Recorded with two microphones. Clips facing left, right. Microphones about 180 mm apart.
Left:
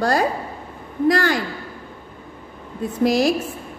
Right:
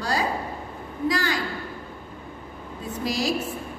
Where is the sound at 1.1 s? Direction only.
60° left (ahead or behind).